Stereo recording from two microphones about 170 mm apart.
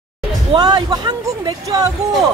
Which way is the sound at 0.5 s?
25° right (ahead or behind).